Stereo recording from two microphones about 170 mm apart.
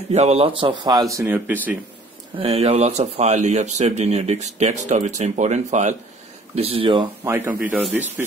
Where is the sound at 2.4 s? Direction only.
35° right (ahead or behind).